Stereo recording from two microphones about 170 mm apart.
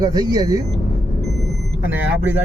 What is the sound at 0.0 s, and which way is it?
Speech, 20° right (ahead or behind).